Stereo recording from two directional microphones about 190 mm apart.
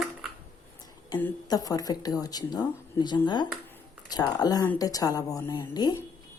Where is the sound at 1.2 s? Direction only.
20° left (ahead or behind).